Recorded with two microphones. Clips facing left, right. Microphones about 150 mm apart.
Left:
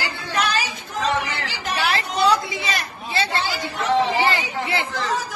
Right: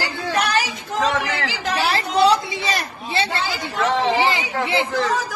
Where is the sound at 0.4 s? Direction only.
75° right (ahead or behind).